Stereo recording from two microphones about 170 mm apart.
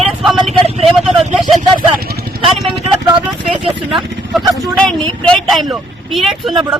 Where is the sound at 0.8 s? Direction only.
Centre (ahead or behind).